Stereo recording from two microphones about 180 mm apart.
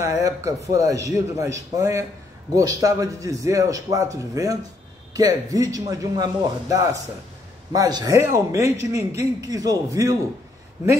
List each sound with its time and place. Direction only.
0.0 s a man's voice: 15° right (ahead or behind)